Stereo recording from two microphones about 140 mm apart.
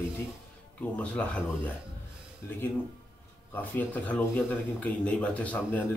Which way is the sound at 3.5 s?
10° left (ahead or behind).